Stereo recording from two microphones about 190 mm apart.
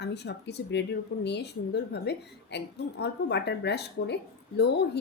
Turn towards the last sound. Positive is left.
turn(degrees=60)  # may be behind; listen again after turning